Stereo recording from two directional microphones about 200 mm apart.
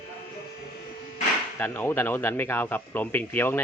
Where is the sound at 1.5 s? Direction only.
10° left (ahead or behind).